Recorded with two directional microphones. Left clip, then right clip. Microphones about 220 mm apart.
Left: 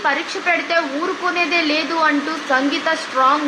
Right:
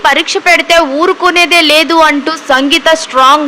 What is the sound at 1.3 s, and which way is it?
A woman's voice, 50° right (ahead or behind).